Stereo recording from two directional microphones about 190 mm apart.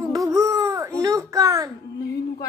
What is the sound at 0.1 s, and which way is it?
Baby cry, 15° right (ahead or behind).